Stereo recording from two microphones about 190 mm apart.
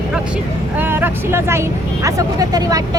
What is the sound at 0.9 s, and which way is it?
Speech, 10° right (ahead or behind).